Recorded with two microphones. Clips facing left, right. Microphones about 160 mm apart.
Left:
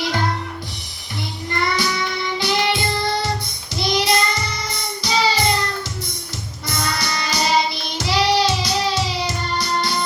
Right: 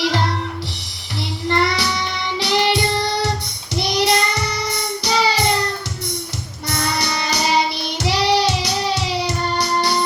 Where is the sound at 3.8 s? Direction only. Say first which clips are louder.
Right 1 dB; 65° right (ahead or behind).